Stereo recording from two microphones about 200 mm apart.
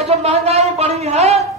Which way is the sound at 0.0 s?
30° right (ahead or behind).